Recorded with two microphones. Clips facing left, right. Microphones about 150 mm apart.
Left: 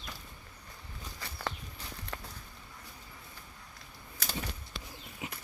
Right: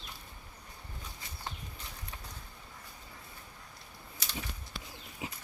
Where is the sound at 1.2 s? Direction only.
80° left.